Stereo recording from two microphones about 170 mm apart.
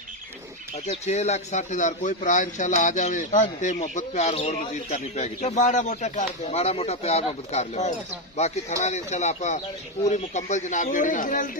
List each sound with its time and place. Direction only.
0.8 s speech: 40° left (ahead or behind)